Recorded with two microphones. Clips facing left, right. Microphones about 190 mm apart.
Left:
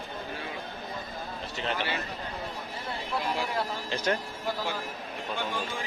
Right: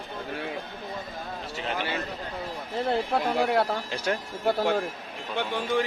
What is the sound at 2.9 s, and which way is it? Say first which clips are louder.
Speech: right 6 dB; 65° right (ahead or behind).